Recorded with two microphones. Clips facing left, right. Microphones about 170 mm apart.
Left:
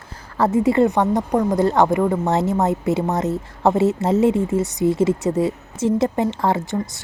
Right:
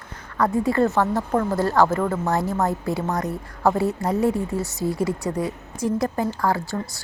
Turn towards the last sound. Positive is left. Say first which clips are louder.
# left 3 dB
turn(degrees=20)  # may be behind; listen again after turning